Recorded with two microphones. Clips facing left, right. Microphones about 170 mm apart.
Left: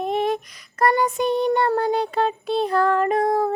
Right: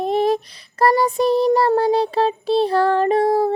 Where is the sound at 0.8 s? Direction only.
30° right (ahead or behind).